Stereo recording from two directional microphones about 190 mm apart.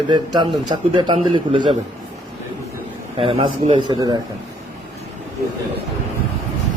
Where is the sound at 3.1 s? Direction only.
30° right (ahead or behind).